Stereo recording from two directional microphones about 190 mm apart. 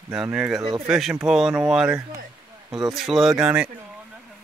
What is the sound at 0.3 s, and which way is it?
Speech, 5° right (ahead or behind).